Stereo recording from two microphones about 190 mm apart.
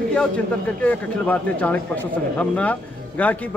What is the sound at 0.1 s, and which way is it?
A man's voice, 5° left (ahead or behind).